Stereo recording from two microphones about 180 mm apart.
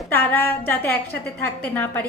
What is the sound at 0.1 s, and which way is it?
A woman's voice, 10° left (ahead or behind).